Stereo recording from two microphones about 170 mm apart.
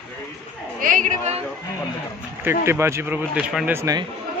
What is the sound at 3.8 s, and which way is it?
Speech, 20° right (ahead or behind).